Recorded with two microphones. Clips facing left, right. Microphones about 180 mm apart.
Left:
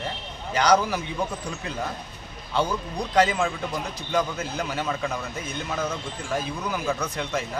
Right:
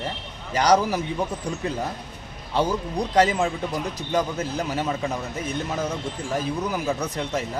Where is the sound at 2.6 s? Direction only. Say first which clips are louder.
Right 3 dB; 35° right (ahead or behind).